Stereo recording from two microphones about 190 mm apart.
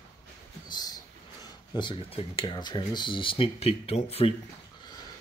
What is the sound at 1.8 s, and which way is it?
Speech, 30° left (ahead or behind).